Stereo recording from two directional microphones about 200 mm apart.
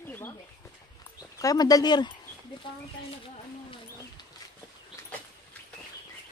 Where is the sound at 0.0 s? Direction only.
10° left (ahead or behind).